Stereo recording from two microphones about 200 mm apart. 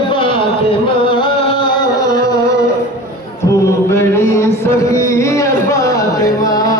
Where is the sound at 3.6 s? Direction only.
15° left (ahead or behind).